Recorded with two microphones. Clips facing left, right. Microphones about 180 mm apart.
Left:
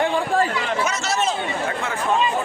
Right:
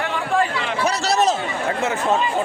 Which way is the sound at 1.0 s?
35° right (ahead or behind).